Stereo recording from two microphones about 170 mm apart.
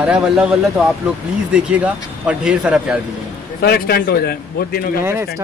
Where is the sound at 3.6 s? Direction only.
65° left (ahead or behind).